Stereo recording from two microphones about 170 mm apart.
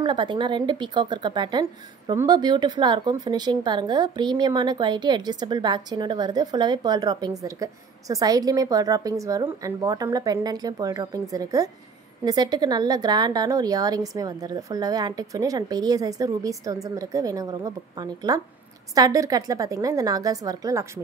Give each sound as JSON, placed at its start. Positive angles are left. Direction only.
{"t": 0.0, "sound": "speech", "side_deg": -30}